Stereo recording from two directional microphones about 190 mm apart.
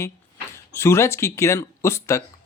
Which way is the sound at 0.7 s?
15° left (ahead or behind).